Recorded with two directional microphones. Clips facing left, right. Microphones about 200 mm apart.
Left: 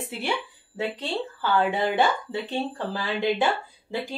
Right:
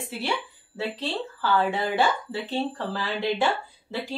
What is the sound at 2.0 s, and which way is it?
A woman's voice, 15° left (ahead or behind).